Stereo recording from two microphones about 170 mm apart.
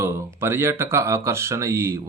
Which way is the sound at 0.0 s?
15° right (ahead or behind).